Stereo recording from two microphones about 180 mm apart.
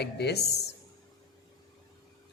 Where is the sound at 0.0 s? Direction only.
65° left (ahead or behind).